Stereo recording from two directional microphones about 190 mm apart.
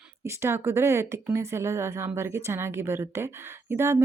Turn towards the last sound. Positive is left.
turn(degrees=-15)  # may be behind; listen again after turning